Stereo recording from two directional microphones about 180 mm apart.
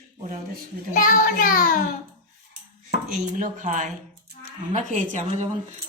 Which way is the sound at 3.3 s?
45° right (ahead or behind).